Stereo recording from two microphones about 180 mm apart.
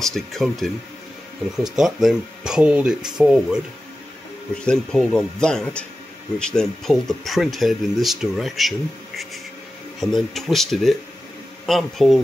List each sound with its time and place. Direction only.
0.0 s speech: centre (ahead or behind)
4.6 s speech: 5° left (ahead or behind)